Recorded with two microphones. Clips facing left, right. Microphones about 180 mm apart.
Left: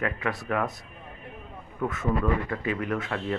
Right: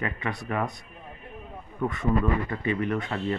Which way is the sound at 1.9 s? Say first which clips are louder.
Right 1 dB; 5° left (ahead or behind).